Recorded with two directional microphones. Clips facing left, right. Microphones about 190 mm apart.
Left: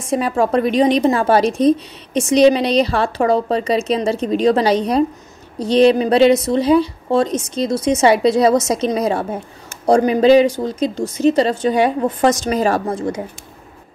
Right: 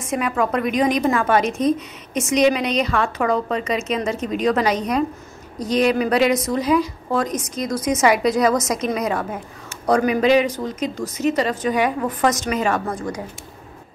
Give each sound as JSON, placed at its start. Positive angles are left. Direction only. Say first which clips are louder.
{"t": 0.0, "sound": "a woman's voice", "louder": "left 4 dB", "side_deg": 30}